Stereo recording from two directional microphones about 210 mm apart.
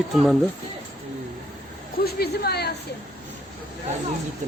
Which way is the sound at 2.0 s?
50° left (ahead or behind).